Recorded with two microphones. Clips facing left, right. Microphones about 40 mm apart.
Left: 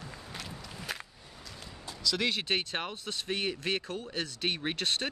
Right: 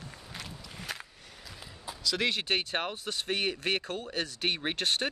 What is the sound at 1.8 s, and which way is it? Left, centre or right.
Speech, centre.